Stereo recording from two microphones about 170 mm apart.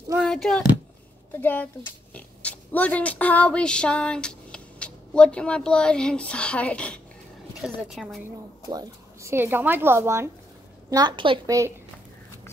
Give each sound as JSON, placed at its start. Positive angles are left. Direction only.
{"t": 0.2, "sound": "a woman's voice", "side_deg": 0}
{"t": 8.6, "sound": "a woman's voice", "side_deg": -20}